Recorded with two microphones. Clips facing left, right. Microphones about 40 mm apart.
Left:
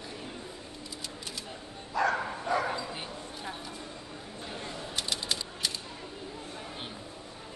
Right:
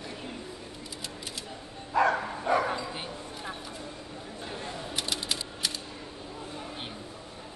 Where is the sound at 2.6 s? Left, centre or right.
Centre.